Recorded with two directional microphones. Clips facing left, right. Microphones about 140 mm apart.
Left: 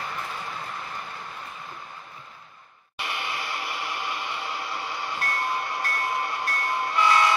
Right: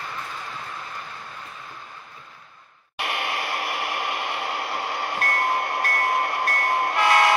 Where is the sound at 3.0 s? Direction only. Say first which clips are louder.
Right 4 dB; 60° right (ahead or behind).